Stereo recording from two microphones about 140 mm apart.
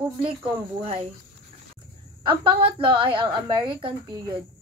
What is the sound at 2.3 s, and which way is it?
A woman's voice, 40° right (ahead or behind).